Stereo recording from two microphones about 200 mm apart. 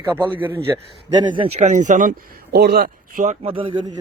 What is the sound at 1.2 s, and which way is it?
Speech, 25° right (ahead or behind).